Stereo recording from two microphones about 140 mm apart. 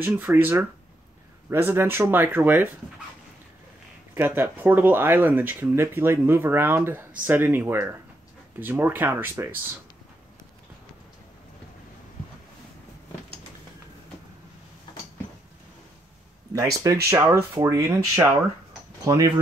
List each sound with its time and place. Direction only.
0.0 s speech: 15° right (ahead or behind)
4.1 s speech: 15° right (ahead or behind)
16.5 s speech: 20° right (ahead or behind)